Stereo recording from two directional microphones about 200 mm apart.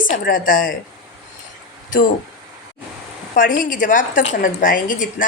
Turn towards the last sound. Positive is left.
turn(degrees=40)  # may be behind; listen again after turning